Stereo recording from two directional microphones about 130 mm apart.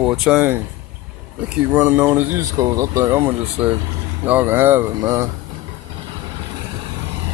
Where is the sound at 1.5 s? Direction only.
10° right (ahead or behind).